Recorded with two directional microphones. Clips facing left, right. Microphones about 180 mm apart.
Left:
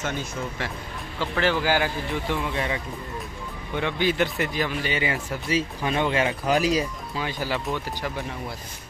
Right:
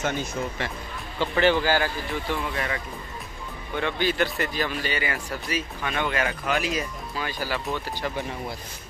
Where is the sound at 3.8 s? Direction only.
15° left (ahead or behind).